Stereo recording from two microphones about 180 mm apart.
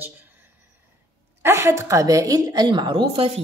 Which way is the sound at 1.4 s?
15° right (ahead or behind).